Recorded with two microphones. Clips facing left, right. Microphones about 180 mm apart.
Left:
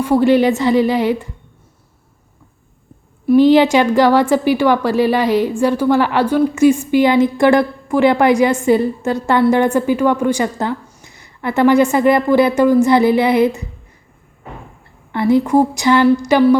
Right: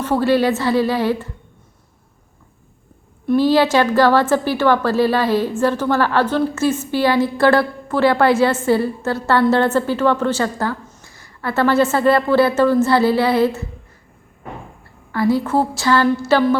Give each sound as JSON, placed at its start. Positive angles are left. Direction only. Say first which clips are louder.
{"t": 0.0, "sound": "a woman's voice", "louder": "left 4 dB", "side_deg": 15}
{"t": 3.3, "sound": "a woman's voice", "louder": "left 4 dB", "side_deg": 15}
{"t": 15.1, "sound": "a woman's voice", "louder": "left 4 dB", "side_deg": 20}